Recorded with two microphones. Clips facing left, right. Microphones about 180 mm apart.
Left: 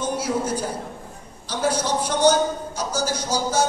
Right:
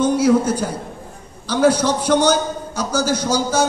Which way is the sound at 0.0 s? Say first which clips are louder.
Right 10 dB; 75° right (ahead or behind).